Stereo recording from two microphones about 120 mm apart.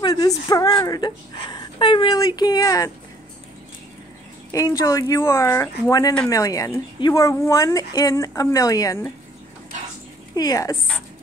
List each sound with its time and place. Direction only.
0.0 s a woman's voice: 35° left (ahead or behind)
2.1 s speech: 30° left (ahead or behind)
4.5 s speech: 30° left (ahead or behind)
10.3 s speech: 30° left (ahead or behind)